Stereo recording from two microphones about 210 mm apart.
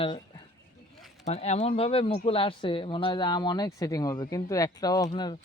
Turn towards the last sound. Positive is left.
turn(degrees=20)  # may be behind; listen again after turning